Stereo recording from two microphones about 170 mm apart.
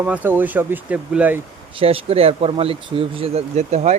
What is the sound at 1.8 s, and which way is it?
Speech, 35° right (ahead or behind).